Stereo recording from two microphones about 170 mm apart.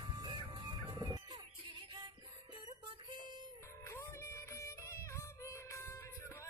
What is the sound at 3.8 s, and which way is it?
Music, 15° left (ahead or behind).